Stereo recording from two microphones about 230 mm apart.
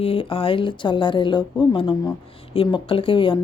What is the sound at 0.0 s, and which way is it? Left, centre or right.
Speech, left.